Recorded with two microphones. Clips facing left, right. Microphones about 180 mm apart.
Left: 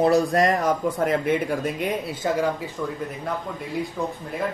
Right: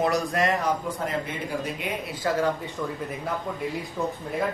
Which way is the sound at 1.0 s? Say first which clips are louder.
Left 8 dB; 55° left (ahead or behind).